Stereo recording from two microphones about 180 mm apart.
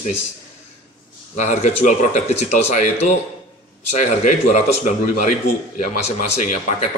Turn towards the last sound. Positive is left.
turn(degrees=40)  # may be behind; listen again after turning